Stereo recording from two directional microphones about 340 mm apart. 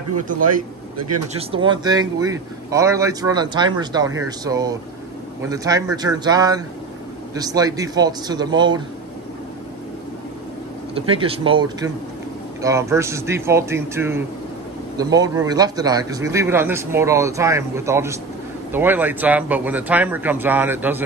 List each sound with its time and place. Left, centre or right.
0.9 s speech: right
1.5 s speech: centre
11.0 s speech: centre